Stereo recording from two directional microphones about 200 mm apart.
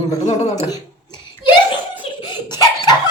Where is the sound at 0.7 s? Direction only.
20° left (ahead or behind).